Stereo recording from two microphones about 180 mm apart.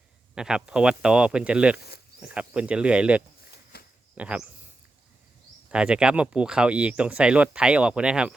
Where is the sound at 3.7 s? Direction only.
60° left (ahead or behind).